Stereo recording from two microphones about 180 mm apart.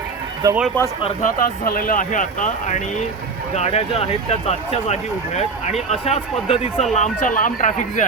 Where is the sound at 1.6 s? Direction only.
50° left (ahead or behind).